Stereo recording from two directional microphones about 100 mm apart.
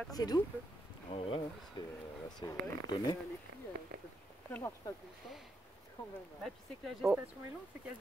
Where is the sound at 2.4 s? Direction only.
40° left (ahead or behind).